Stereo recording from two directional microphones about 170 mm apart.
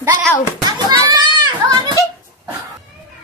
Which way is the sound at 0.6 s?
25° right (ahead or behind).